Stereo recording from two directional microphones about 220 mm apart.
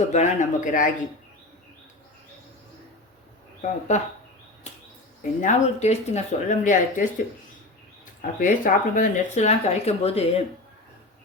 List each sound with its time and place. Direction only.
0.1 s speech: 35° left (ahead or behind)
3.6 s speech: 35° left (ahead or behind)
5.4 s speech: 30° left (ahead or behind)
8.2 s speech: 35° left (ahead or behind)